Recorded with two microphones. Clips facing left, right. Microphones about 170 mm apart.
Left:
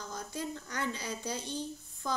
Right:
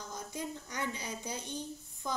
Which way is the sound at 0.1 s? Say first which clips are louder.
Left 2 dB; 20° right (ahead or behind).